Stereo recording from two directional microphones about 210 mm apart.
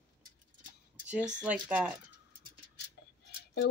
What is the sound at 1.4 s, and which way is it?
Speech, 5° right (ahead or behind).